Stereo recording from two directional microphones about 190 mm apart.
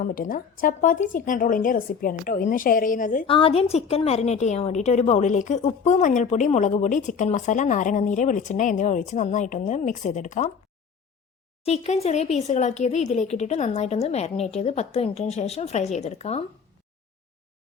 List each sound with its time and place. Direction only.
0.0 s a woman's voice: 45° left (ahead or behind)
3.2 s a woman's voice: 30° left (ahead or behind)
11.6 s a woman's voice: 35° left (ahead or behind)